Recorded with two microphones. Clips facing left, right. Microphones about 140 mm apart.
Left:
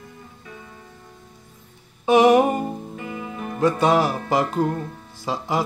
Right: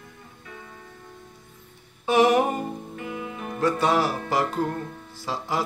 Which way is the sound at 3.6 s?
20° left (ahead or behind).